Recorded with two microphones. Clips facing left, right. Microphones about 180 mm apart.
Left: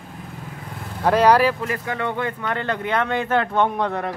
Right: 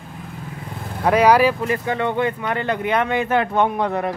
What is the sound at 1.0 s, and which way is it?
Speech, 10° right (ahead or behind).